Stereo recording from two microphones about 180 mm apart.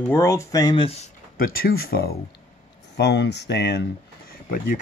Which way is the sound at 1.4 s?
55° left (ahead or behind).